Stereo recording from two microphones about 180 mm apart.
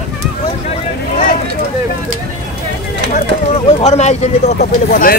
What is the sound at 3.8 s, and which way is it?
Speech, 40° left (ahead or behind).